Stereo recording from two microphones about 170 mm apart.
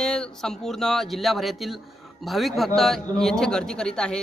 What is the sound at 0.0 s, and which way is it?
A man's voice, 5° left (ahead or behind).